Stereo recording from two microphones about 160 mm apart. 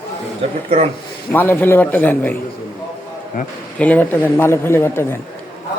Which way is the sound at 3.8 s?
10° left (ahead or behind).